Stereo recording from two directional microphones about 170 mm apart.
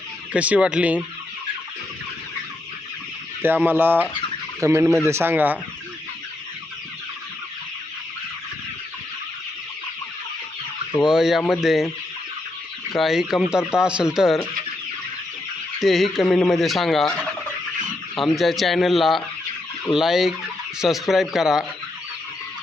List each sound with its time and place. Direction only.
0.3 s speech: 10° right (ahead or behind)
3.4 s speech: 10° right (ahead or behind)
11.0 s turkey: 5° right (ahead or behind)
12.9 s turkey: centre (ahead or behind)
15.8 s turkey: centre (ahead or behind)